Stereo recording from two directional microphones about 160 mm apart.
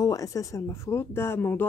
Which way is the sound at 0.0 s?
20° left (ahead or behind).